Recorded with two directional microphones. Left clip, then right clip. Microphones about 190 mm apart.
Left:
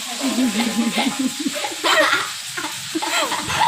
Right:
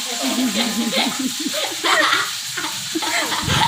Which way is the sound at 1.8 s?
20° left (ahead or behind).